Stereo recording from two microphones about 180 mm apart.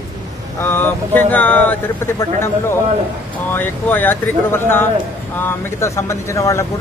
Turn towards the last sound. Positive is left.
turn(degrees=15)  # may be behind; listen again after turning